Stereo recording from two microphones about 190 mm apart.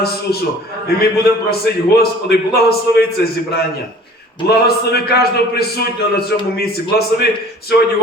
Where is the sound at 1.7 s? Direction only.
60° left (ahead or behind).